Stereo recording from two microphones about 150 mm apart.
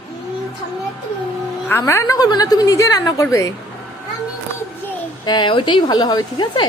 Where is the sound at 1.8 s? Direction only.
20° left (ahead or behind).